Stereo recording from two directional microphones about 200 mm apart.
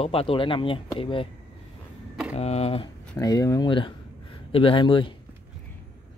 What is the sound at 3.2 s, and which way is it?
Speech, 20° left (ahead or behind).